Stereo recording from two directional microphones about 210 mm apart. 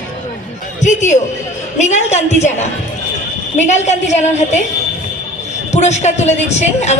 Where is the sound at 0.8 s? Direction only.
35° left (ahead or behind).